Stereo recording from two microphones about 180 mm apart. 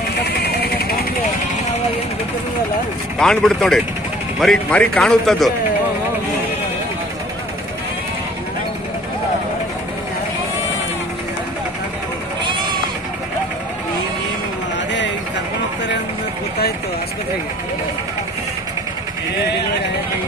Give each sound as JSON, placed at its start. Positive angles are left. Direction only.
{"t": 0.2, "sound": "vehicle", "side_deg": 60}
{"t": 3.2, "sound": "a man's voice", "side_deg": 5}
{"t": 14.9, "sound": "a sound", "side_deg": 75}